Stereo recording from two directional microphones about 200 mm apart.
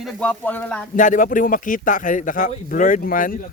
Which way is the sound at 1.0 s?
40° left (ahead or behind).